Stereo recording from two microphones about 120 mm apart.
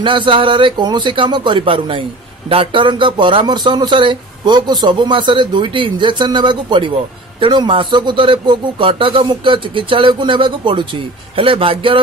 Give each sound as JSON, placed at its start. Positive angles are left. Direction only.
{"t": 0.0, "sound": "a man's voice", "side_deg": -45}